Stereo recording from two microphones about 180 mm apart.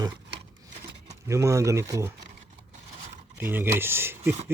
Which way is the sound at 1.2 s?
15° right (ahead or behind).